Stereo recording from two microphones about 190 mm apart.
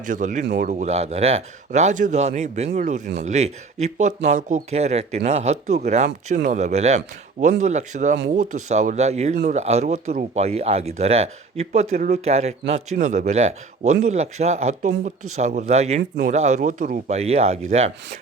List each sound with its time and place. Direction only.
0.0 s speech: 40° right (ahead or behind)